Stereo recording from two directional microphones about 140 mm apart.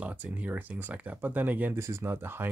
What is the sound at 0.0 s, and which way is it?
Speech, 10° right (ahead or behind).